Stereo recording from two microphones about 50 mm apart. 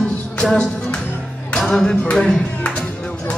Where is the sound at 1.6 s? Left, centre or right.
Centre.